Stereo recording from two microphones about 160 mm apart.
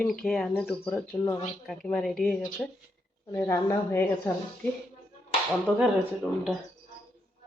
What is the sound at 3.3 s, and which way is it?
Speech, 20° left (ahead or behind).